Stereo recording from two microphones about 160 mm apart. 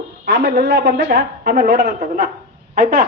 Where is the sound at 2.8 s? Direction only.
70° right (ahead or behind).